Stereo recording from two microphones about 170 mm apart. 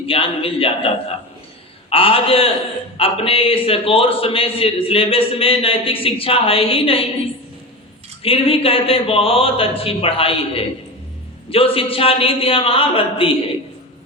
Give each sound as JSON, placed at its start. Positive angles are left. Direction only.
{"t": 0.0, "sound": "a man's voice", "side_deg": 35}
{"t": 1.9, "sound": "a man's voice", "side_deg": 35}
{"t": 8.2, "sound": "a man's voice", "side_deg": 35}